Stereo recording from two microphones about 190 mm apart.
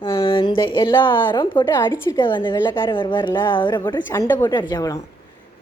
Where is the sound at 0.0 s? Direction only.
30° left (ahead or behind).